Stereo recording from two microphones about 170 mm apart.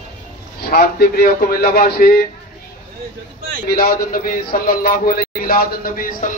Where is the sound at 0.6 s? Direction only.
65° left (ahead or behind).